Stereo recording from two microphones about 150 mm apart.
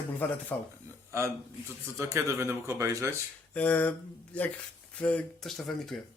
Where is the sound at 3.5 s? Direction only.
10° left (ahead or behind).